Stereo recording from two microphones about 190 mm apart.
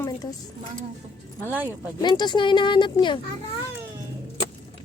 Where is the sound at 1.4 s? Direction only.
10° right (ahead or behind).